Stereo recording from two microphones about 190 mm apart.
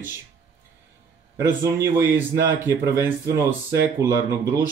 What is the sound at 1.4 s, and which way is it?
A man's voice, 15° right (ahead or behind).